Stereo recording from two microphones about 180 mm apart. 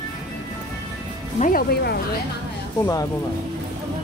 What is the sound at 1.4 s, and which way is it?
Speech, 55° left (ahead or behind).